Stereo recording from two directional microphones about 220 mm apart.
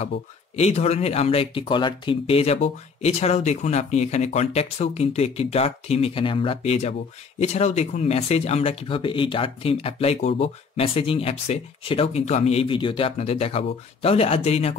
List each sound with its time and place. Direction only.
0.6 s speech: 30° left (ahead or behind)